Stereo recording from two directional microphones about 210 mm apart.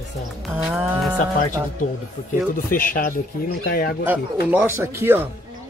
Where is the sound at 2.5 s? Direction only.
40° left (ahead or behind).